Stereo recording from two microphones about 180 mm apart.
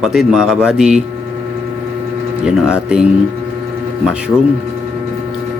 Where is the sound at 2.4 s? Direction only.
5° right (ahead or behind).